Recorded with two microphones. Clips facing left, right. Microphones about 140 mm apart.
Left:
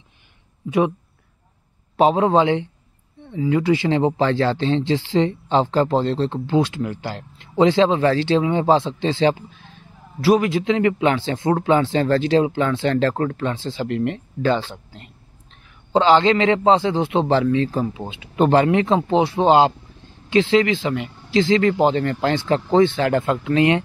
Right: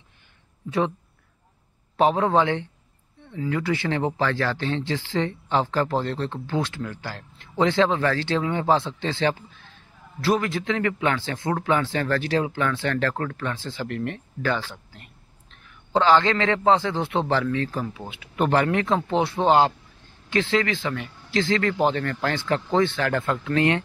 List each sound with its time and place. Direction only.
0.7 s speech: 15° left (ahead or behind)
2.0 s speech: 20° left (ahead or behind)